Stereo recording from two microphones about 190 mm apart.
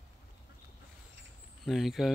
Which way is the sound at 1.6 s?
Centre (ahead or behind).